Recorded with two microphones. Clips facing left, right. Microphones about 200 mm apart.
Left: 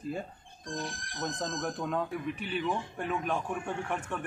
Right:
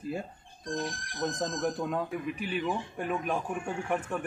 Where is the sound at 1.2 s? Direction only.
5° right (ahead or behind).